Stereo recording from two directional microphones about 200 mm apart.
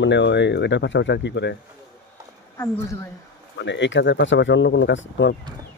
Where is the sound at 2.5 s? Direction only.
15° left (ahead or behind).